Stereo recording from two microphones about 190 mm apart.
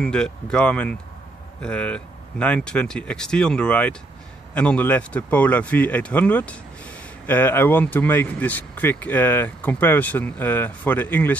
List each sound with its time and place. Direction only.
0.0 s speech: 5° left (ahead or behind)